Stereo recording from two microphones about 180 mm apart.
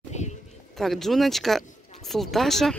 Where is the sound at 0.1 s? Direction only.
40° left (ahead or behind).